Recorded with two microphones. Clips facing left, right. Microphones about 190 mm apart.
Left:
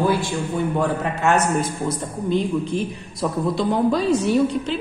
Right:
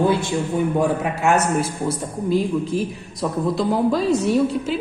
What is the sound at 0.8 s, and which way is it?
A man's voice, 10° right (ahead or behind).